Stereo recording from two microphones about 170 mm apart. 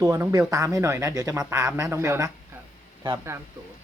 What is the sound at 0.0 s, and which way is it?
Speech, 20° right (ahead or behind).